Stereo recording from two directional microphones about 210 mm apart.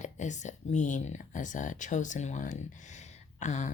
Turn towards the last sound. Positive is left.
turn(degrees=35)  # may be behind; listen again after turning